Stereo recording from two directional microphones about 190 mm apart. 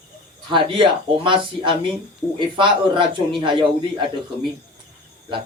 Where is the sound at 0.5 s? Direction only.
25° right (ahead or behind).